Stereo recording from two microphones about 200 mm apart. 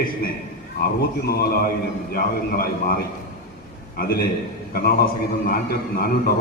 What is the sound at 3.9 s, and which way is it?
A man's voice, 50° left (ahead or behind).